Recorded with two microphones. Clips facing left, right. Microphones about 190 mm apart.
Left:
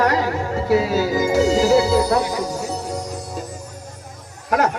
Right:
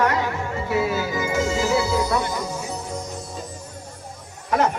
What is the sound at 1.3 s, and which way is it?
Music, 40° left (ahead or behind).